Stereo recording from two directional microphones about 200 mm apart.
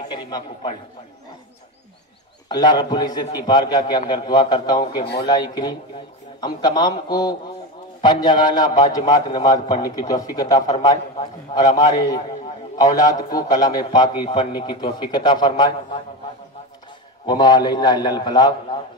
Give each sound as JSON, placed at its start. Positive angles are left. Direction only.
{"t": 0.1, "sound": "a man's voice", "side_deg": 20}
{"t": 2.4, "sound": "a man's voice", "side_deg": 20}
{"t": 17.3, "sound": "a man's voice", "side_deg": 20}